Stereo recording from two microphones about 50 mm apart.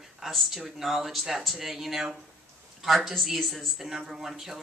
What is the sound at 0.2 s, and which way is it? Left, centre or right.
Speech, centre.